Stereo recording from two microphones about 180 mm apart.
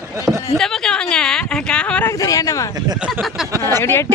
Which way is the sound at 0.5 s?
5° left (ahead or behind).